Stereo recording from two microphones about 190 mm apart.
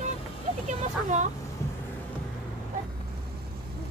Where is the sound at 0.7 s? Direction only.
40° right (ahead or behind).